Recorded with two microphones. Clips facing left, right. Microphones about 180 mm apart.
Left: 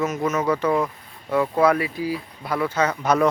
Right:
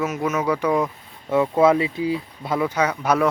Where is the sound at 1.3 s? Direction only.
20° right (ahead or behind).